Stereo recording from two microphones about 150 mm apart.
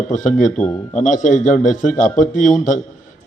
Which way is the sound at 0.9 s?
55° left (ahead or behind).